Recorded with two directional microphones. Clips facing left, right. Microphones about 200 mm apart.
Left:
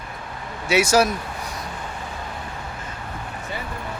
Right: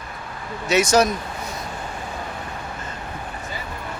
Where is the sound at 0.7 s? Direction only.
10° left (ahead or behind).